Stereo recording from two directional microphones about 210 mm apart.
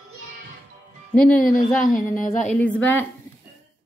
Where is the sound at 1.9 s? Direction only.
40° left (ahead or behind).